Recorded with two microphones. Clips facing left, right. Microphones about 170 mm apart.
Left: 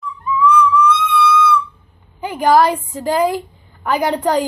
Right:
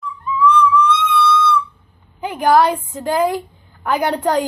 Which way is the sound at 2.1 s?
Centre (ahead or behind).